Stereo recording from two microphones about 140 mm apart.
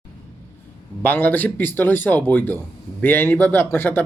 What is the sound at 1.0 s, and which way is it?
Speech, 15° left (ahead or behind).